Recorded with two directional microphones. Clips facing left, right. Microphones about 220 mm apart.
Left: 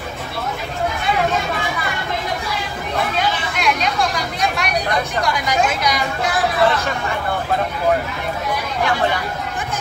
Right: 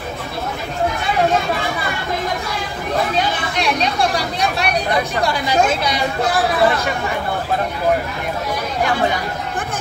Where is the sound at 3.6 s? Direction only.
35° right (ahead or behind).